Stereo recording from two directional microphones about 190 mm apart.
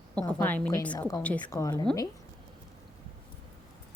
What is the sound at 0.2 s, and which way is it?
A woman's voice, 10° left (ahead or behind).